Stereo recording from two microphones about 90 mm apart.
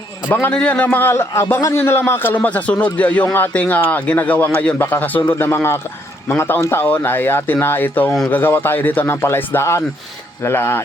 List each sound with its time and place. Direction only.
0.5 s speech: 15° left (ahead or behind)
1.0 s speech: 30° left (ahead or behind)